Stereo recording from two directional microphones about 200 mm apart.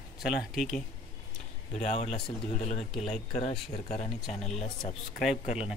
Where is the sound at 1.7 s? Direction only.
35° left (ahead or behind).